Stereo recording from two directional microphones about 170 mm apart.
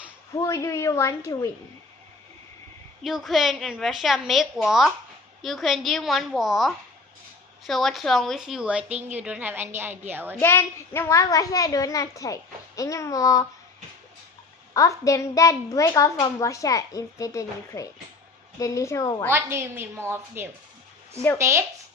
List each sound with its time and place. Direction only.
0.3 s a woman's voice: 20° left (ahead or behind)
3.0 s a woman's voice: centre (ahead or behind)
10.4 s a woman's voice: 15° left (ahead or behind)
14.7 s a woman's voice: 20° left (ahead or behind)
19.3 s a woman's voice: 15° right (ahead or behind)